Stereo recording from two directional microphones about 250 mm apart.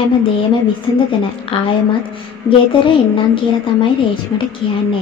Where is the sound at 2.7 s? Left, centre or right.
Centre.